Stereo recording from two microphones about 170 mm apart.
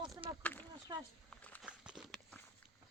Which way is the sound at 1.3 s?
5° left (ahead or behind).